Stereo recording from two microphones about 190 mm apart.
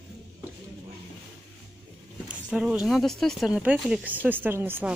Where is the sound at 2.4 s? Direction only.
5° right (ahead or behind).